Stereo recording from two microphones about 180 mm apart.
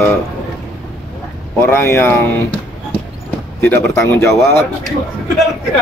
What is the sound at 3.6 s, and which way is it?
Speech, 15° left (ahead or behind).